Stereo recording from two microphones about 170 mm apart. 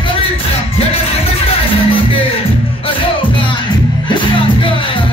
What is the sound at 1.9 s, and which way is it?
Music, 30° left (ahead or behind).